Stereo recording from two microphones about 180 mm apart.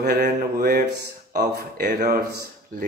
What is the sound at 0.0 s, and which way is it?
Speech, 55° right (ahead or behind).